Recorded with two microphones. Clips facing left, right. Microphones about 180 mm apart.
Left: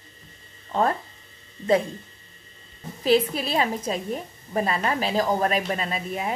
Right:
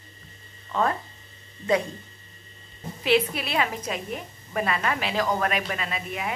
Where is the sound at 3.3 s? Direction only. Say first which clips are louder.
Left 3 dB; 35° left (ahead or behind).